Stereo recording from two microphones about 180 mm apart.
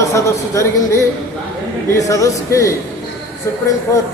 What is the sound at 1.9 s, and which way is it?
Speech, 20° left (ahead or behind).